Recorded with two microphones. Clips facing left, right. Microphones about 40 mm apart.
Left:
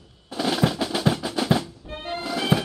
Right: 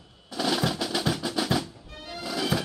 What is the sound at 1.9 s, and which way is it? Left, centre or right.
Music, left.